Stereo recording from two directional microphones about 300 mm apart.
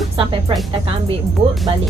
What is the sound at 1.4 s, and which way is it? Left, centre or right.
Speech, centre.